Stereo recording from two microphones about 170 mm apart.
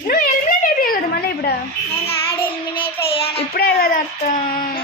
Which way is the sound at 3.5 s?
55° left (ahead or behind).